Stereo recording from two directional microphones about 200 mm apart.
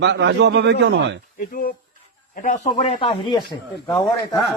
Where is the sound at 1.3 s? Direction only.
45° left (ahead or behind); by 4.1 s 20° left (ahead or behind).